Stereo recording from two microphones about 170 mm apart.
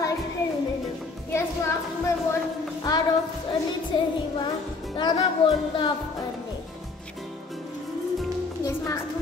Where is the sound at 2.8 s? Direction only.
25° left (ahead or behind).